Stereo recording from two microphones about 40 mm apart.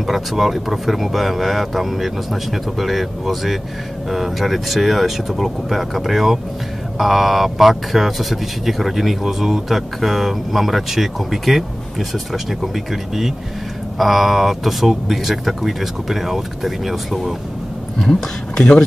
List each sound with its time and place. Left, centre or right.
0.0 s speech: centre
18.6 s speech: centre